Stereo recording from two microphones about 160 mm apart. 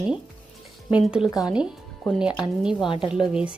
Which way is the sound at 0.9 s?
5° right (ahead or behind).